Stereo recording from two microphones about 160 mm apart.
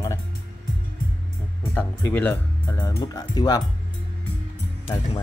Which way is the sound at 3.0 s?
25° left (ahead or behind).